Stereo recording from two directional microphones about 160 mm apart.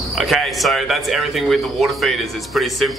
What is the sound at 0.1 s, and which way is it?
Speech, centre (ahead or behind).